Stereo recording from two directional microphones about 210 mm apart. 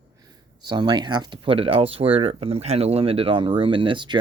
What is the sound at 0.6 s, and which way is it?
Speech, 20° right (ahead or behind).